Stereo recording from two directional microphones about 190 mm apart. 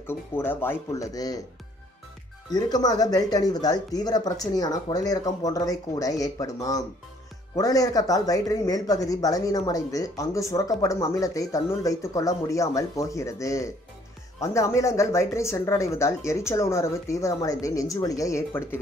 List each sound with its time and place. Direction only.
0.0 s speech: 10° left (ahead or behind)
2.5 s speech: 20° left (ahead or behind)